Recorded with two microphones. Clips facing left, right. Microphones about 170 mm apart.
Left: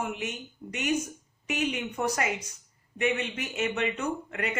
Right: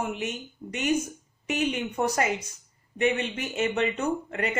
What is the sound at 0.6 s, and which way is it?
Speech, 5° left (ahead or behind).